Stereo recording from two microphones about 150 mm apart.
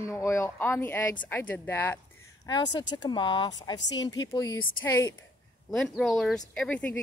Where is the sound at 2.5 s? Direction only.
30° left (ahead or behind).